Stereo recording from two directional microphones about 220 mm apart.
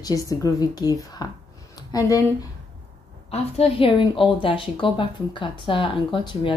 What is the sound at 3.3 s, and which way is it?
A woman's voice, 25° left (ahead or behind).